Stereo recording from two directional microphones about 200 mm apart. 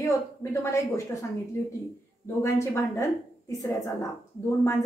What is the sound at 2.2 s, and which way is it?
A woman's voice, 15° left (ahead or behind).